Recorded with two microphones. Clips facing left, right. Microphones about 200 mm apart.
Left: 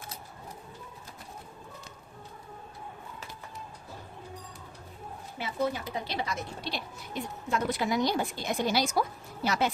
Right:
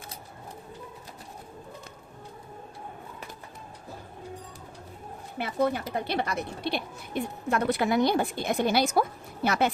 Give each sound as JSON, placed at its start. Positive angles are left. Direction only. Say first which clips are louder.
{"t": 5.4, "sound": "speech", "louder": "right 4 dB", "side_deg": -60}